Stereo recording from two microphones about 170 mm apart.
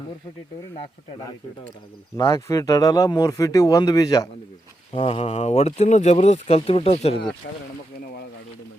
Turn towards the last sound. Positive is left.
turn(degrees=70)  # may be behind; listen again after turning